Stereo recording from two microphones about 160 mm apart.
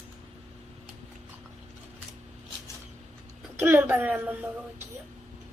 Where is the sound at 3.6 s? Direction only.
15° right (ahead or behind).